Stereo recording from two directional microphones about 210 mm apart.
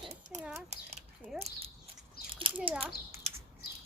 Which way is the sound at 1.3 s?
30° right (ahead or behind).